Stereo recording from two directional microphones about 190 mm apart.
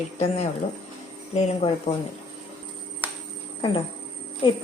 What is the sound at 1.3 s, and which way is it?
Speech, 30° left (ahead or behind).